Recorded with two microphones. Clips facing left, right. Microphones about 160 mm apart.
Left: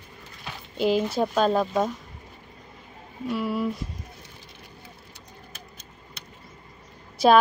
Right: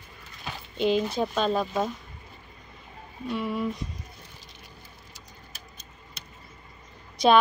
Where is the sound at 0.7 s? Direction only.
5° left (ahead or behind).